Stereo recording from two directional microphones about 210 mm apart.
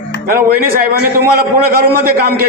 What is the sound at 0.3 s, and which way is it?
A man's voice, 45° right (ahead or behind).